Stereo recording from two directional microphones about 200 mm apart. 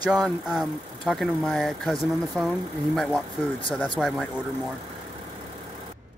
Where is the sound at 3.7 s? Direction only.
Centre (ahead or behind).